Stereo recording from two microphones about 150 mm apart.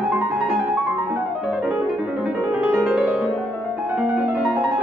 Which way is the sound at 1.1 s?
10° right (ahead or behind).